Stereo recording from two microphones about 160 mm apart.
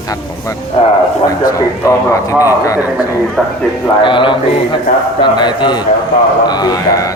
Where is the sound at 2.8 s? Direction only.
10° right (ahead or behind).